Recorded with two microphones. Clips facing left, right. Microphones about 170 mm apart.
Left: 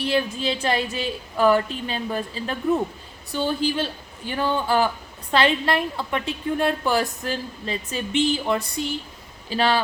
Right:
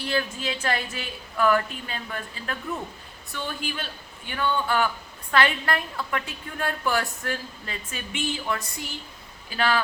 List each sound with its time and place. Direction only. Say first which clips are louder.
0.1 s a woman's voice: left 3 dB; 25° left (ahead or behind)